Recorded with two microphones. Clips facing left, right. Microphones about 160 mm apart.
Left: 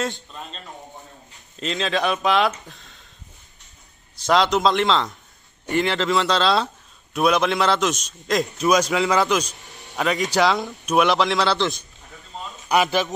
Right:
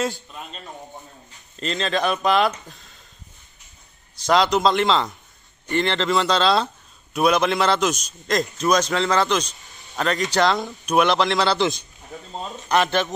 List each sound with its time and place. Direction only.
1.3 s speech: centre (ahead or behind)
4.2 s a man's voice: centre (ahead or behind)
9.7 s a sound: 75° left (ahead or behind)
9.9 s a man's voice: centre (ahead or behind)
11.6 s a man's voice: 20° right (ahead or behind)
12.3 s a sound: 40° right (ahead or behind)
12.6 s a man's voice: 5° left (ahead or behind)